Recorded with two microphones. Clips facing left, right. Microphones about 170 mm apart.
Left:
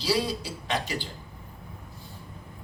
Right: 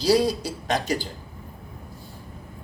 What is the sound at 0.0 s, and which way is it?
A man's voice, 40° right (ahead or behind).